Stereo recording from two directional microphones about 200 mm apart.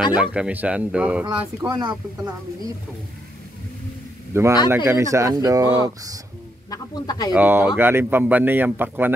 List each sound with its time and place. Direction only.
0.2 s speech: 5° right (ahead or behind)
1.7 s speech: 20° right (ahead or behind)
4.3 s a man's voice: 15° right (ahead or behind)
6.7 s speech: 20° left (ahead or behind)
7.3 s speech: 10° right (ahead or behind)